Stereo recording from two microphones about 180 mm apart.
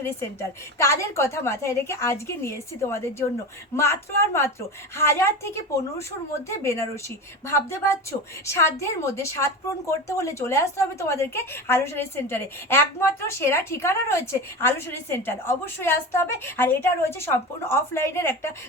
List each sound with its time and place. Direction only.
0.0 s a woman's voice: 15° left (ahead or behind)